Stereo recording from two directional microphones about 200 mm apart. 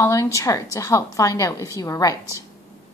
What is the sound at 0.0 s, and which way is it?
A woman's voice, 15° left (ahead or behind).